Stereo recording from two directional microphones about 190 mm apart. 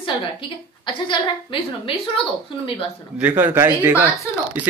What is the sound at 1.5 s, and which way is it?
A woman's voice, 25° left (ahead or behind).